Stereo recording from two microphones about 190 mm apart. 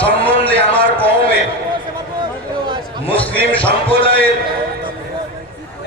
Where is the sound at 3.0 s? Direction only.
30° left (ahead or behind).